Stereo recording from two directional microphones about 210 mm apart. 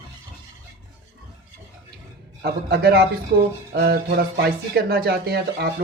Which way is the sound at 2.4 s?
50° right (ahead or behind).